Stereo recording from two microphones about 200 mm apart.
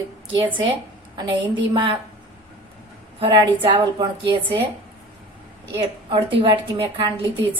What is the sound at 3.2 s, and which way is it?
A woman's voice, 25° right (ahead or behind).